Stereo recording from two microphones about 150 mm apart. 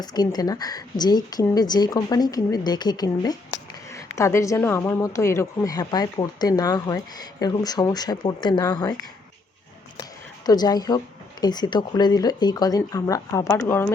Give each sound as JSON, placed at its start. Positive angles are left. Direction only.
{"t": 0.0, "sound": "speech", "side_deg": 25}
{"t": 10.0, "sound": "speech", "side_deg": 25}